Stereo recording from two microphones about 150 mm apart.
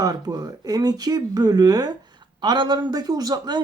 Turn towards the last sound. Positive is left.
turn(degrees=-25)  # may be behind; listen again after turning